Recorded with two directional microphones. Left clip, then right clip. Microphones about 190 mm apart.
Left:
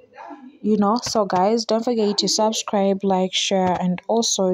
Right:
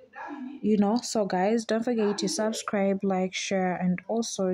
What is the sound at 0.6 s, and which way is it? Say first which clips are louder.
Speech: left 6 dB; 10° left (ahead or behind).